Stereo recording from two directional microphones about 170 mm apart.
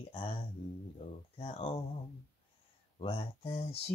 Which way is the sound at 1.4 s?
35° left (ahead or behind).